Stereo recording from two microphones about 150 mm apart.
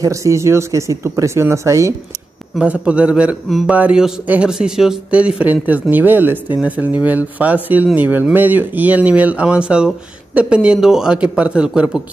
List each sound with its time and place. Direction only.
0.0 s speech: 20° right (ahead or behind)
2.5 s speech: 5° right (ahead or behind)